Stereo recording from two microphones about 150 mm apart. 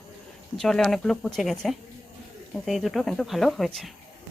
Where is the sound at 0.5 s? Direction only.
5° left (ahead or behind).